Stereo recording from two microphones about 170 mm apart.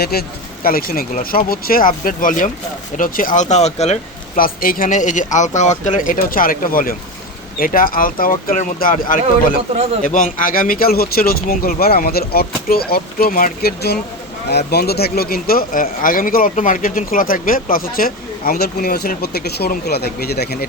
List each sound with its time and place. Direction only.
0.0 s speech: 65° left (ahead or behind); by 3.9 s 40° left (ahead or behind)
4.4 s speech: 60° left (ahead or behind)